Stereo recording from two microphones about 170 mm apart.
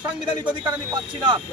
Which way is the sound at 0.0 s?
25° right (ahead or behind).